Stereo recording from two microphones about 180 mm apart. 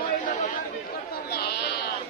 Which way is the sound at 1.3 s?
60° left (ahead or behind).